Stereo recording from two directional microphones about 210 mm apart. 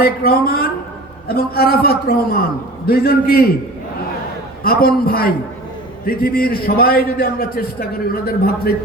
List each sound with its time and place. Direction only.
0.0 s a man's voice: 45° left (ahead or behind)
4.6 s a man's voice: 45° left (ahead or behind)